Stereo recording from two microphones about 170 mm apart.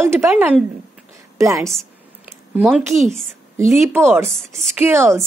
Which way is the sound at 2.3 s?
10° right (ahead or behind).